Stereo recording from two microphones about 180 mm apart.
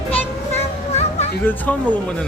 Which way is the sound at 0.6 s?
35° left (ahead or behind).